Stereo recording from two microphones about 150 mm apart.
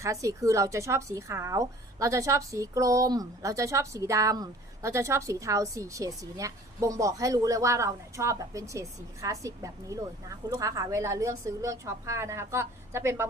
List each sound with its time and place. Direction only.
0.0 s speech: 20° right (ahead or behind)